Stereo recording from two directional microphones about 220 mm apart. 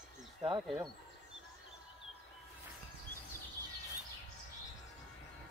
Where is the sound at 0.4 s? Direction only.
20° right (ahead or behind).